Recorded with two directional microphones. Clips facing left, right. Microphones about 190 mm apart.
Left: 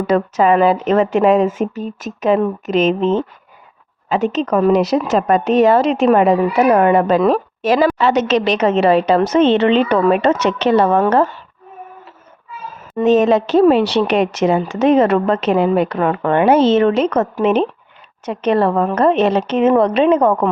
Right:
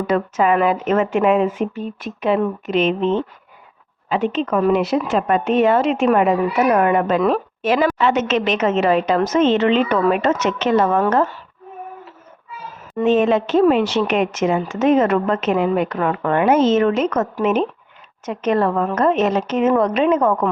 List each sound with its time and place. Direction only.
0.1 s a woman's voice: 35° left (ahead or behind)
13.1 s a woman's voice: 40° left (ahead or behind)